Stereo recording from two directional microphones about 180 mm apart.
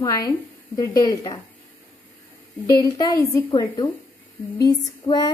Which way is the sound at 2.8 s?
20° left (ahead or behind).